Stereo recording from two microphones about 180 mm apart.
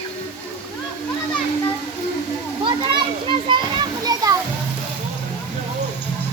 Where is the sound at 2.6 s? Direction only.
25° right (ahead or behind).